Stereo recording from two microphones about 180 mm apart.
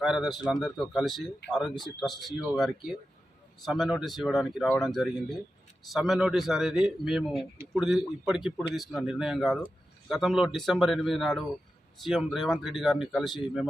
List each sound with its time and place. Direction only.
0.0 s speech: centre (ahead or behind)
0.3 s speech: 20° left (ahead or behind)
0.6 s speech: centre (ahead or behind)
3.7 s speech: centre (ahead or behind)